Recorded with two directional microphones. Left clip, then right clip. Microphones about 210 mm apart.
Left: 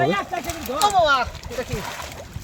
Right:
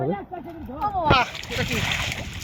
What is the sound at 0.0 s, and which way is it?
Speech, 20° left (ahead or behind).